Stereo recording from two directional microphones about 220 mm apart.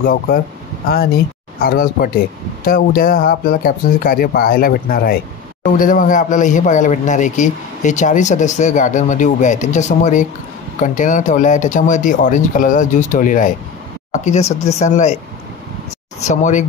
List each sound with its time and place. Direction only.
0.0 s a man's voice: 40° left (ahead or behind)
1.6 s a man's voice: 40° left (ahead or behind)
16.3 s a man's voice: 30° left (ahead or behind)